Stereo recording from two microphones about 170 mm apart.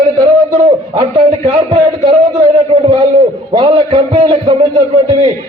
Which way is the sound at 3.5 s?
25° right (ahead or behind).